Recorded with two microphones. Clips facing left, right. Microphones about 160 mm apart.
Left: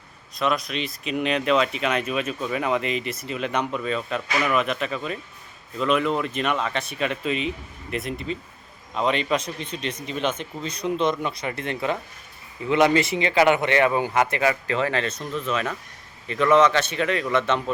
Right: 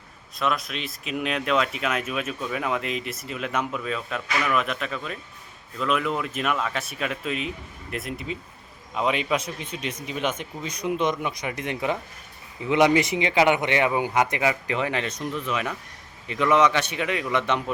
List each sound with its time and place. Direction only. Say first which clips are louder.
0.3 s speech: left 2 dB; centre (ahead or behind)